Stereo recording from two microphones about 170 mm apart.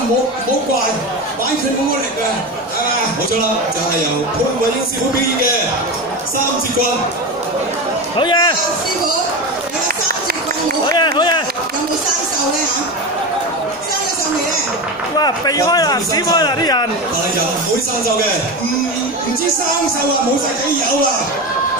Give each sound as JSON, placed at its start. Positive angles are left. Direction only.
{"t": 8.2, "sound": "a man's voice", "side_deg": 25}
{"t": 11.0, "sound": "speech", "side_deg": 25}
{"t": 15.1, "sound": "a man's voice", "side_deg": 25}